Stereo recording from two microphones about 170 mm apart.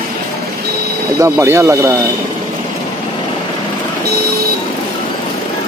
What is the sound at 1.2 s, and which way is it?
Speech, 15° right (ahead or behind).